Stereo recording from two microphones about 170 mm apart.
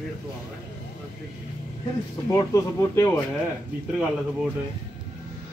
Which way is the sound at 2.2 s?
20° left (ahead or behind).